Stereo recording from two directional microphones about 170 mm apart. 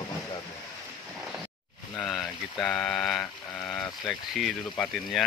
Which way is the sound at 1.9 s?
5° left (ahead or behind).